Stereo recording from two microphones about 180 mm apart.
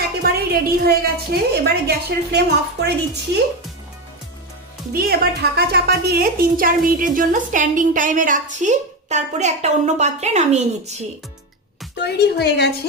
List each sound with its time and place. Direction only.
0.2 s a woman's voice: 60° right (ahead or behind)
4.9 s a woman's voice: 55° right (ahead or behind); by 11.1 s 40° right (ahead or behind)
11.9 s a woman's voice: 65° left (ahead or behind)